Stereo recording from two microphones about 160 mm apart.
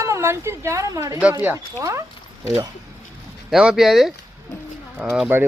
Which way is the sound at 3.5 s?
5° right (ahead or behind).